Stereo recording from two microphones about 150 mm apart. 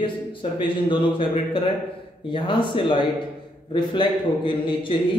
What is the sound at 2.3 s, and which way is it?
A man's voice, 35° left (ahead or behind).